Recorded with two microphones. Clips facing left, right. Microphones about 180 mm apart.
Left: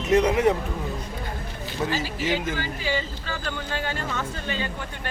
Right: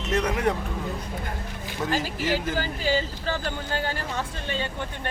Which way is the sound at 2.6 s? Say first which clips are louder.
Right 3 dB; 40° right (ahead or behind).